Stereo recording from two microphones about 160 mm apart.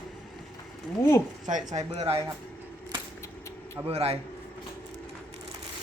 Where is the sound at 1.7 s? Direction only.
40° right (ahead or behind).